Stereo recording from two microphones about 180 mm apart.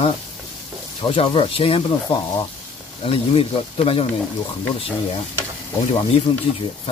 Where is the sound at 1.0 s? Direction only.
30° left (ahead or behind).